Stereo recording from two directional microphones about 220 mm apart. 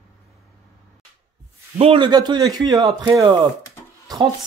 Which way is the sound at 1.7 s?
25° right (ahead or behind).